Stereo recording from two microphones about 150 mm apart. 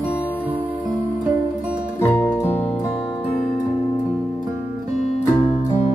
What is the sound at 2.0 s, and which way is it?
Music, 15° left (ahead or behind).